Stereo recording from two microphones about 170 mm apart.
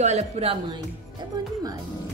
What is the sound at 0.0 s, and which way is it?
Speech, 40° right (ahead or behind).